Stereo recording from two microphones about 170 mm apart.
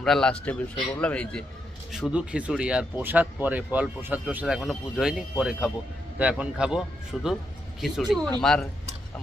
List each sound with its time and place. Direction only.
0.0 s a man's voice: 5° left (ahead or behind)